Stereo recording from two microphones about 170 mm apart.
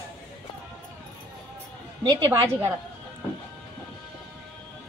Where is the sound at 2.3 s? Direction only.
15° right (ahead or behind).